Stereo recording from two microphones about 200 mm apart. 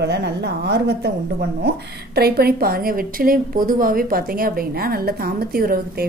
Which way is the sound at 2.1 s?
50° right (ahead or behind).